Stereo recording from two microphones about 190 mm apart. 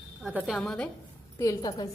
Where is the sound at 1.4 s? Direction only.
20° left (ahead or behind).